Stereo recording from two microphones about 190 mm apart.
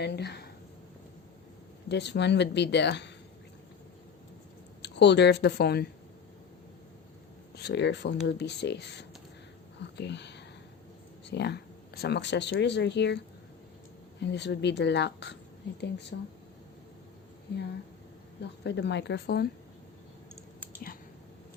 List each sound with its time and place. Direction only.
0.0 s speech: 60° left (ahead or behind)
1.9 s speech: 65° left (ahead or behind)
4.8 s speech: 65° left (ahead or behind)
7.5 s speech: 60° left (ahead or behind)
18.6 s speech: 65° left (ahead or behind)